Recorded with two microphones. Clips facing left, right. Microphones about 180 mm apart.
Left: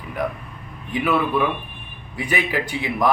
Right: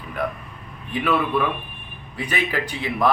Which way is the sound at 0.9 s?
15° left (ahead or behind).